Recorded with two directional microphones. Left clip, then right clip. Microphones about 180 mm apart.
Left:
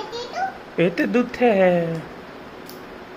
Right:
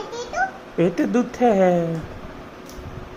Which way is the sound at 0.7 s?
15° right (ahead or behind).